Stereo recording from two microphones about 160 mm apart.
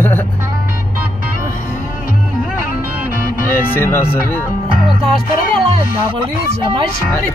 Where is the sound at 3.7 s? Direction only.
15° left (ahead or behind).